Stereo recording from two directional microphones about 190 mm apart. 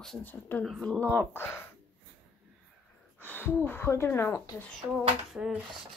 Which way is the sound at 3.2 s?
10° left (ahead or behind).